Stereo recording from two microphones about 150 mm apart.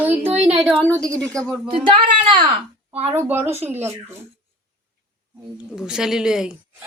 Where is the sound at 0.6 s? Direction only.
5° left (ahead or behind).